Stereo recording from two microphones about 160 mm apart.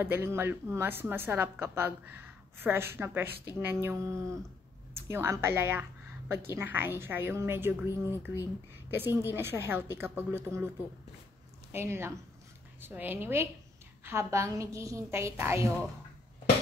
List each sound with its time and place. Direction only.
0.0 s a woman's voice: 15° right (ahead or behind)
11.7 s a woman's voice: 15° right (ahead or behind)